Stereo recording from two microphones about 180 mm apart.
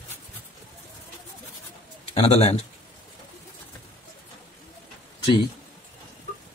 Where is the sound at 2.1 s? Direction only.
35° left (ahead or behind).